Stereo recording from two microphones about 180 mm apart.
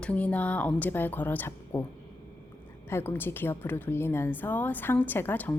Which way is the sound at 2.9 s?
10° left (ahead or behind).